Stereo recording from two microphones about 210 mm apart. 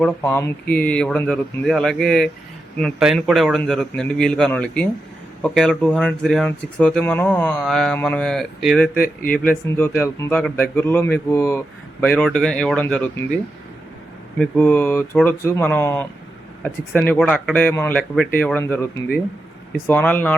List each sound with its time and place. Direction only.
0.0 s speech: 10° left (ahead or behind)
9.0 s speech: 45° left (ahead or behind)
9.4 s speech: 10° left (ahead or behind)
14.3 s speech: 5° left (ahead or behind)